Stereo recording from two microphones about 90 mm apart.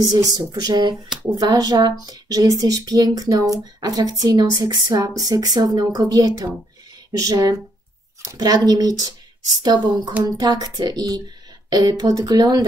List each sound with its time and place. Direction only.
0.0 s speech: 40° right (ahead or behind)